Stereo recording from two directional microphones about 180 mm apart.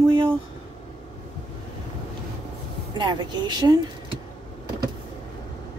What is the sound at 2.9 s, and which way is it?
Speech, 25° right (ahead or behind).